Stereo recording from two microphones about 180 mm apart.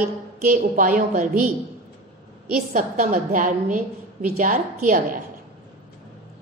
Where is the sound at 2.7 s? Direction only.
45° right (ahead or behind).